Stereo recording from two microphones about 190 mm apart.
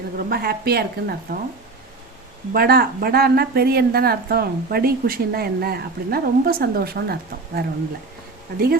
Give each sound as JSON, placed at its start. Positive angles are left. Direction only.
{"t": 0.3, "sound": "speech", "side_deg": -50}
{"t": 2.5, "sound": "speech", "side_deg": -55}